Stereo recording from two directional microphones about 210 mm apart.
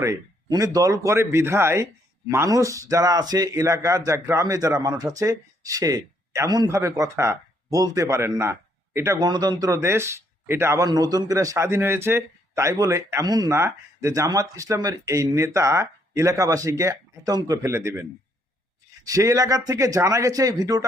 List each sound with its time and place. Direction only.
0.0 s speech: 15° right (ahead or behind)
19.0 s speech: 15° right (ahead or behind)